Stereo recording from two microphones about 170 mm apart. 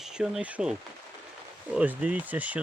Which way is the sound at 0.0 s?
5° right (ahead or behind).